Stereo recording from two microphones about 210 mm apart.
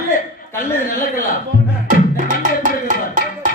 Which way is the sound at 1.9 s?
40° right (ahead or behind).